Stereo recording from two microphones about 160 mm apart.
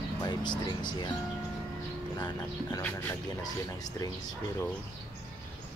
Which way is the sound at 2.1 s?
25° left (ahead or behind).